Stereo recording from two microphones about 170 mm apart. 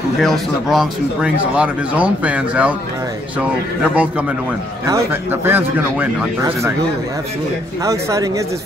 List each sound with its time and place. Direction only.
0.2 s speech: centre (ahead or behind)
4.8 s speech: 15° right (ahead or behind)
7.8 s speech: 20° right (ahead or behind)